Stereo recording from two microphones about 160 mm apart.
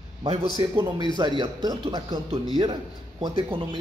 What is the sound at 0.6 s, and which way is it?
A man's voice, 30° right (ahead or behind).